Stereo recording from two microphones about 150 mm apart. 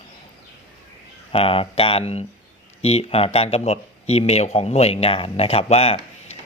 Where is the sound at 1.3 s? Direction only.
40° left (ahead or behind).